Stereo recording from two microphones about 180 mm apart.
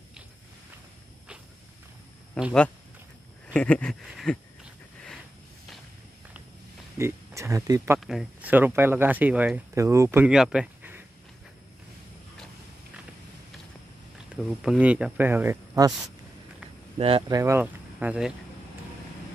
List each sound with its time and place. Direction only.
2.3 s speech: centre (ahead or behind)
7.0 s speech: 15° right (ahead or behind)
8.0 s speech: centre (ahead or behind)
14.3 s speech: 5° right (ahead or behind)
17.0 s speech: 30° right (ahead or behind)
17.4 s speech: 15° right (ahead or behind)